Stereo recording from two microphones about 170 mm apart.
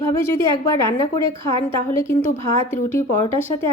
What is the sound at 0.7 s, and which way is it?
A woman's voice, 20° left (ahead or behind).